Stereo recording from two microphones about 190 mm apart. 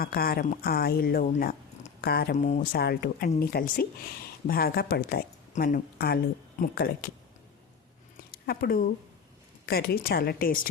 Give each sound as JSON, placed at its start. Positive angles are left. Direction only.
{"t": 0.0, "sound": "speech", "side_deg": 50}
{"t": 2.3, "sound": "speech", "side_deg": 40}
{"t": 2.7, "sound": "speech", "side_deg": 55}
{"t": 8.3, "sound": "a sound", "side_deg": 50}
{"t": 9.6, "sound": "speech", "side_deg": 55}